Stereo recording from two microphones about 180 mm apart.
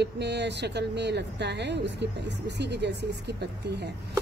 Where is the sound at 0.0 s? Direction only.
70° right (ahead or behind).